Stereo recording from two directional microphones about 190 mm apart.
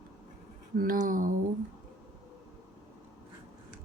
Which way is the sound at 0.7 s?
45° right (ahead or behind).